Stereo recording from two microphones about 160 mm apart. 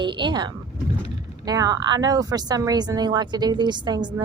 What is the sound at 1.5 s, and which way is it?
Speech, 25° right (ahead or behind).